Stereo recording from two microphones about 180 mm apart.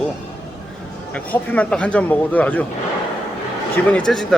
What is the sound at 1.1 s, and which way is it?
Speech, 10° left (ahead or behind).